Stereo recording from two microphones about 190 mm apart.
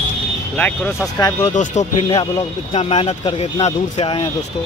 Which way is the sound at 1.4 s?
40° left (ahead or behind).